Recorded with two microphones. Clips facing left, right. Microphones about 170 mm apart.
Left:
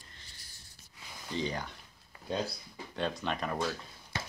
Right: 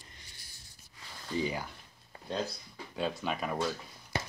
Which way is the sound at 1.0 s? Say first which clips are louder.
Even; 10° left (ahead or behind).